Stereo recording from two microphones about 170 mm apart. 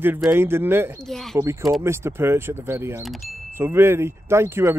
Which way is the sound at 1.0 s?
Centre (ahead or behind).